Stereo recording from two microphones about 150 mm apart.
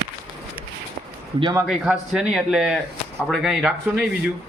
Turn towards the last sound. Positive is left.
turn(degrees=-5)  # may be behind; listen again after turning